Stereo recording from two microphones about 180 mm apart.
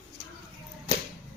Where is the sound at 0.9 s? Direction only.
30° left (ahead or behind).